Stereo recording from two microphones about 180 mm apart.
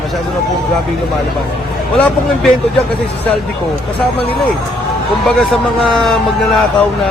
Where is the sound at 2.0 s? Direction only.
5° left (ahead or behind).